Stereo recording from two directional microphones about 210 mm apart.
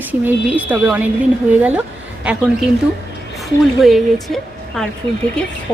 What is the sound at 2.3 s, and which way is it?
Speech, 5° right (ahead or behind).